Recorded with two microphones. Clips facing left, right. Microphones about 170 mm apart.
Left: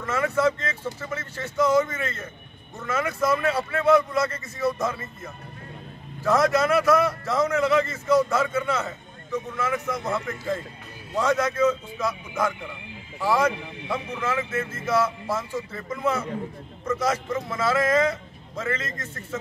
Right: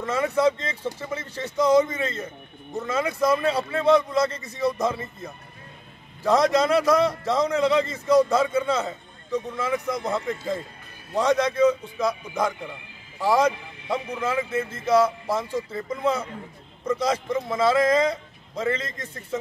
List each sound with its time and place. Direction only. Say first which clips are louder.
0.0 s a man's voice: right 1 dB; 15° right (ahead or behind)